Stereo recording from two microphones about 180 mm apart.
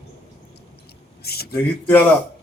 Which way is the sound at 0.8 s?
60° left (ahead or behind).